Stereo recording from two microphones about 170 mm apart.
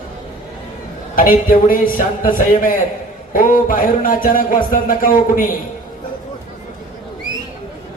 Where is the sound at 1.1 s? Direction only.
55° left (ahead or behind).